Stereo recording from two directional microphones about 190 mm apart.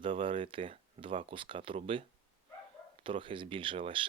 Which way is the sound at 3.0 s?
25° right (ahead or behind).